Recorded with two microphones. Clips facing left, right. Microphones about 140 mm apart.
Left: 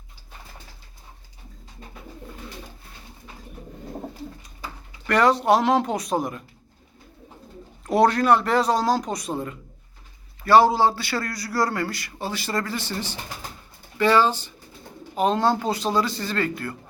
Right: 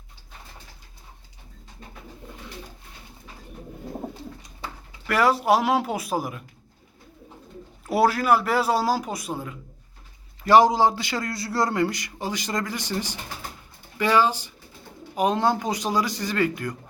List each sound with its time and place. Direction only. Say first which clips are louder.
5.0 s a man's voice: left 2 dB; 5° right (ahead or behind)
7.9 s a man's voice: left 2 dB; 5° right (ahead or behind)
10.4 s a man's voice: even; 15° right (ahead or behind)